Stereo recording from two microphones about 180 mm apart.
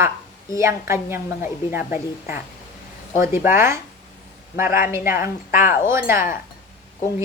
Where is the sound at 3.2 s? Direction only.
10° right (ahead or behind).